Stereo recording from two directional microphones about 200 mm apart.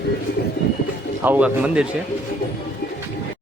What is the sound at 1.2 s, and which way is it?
Speech, 10° right (ahead or behind).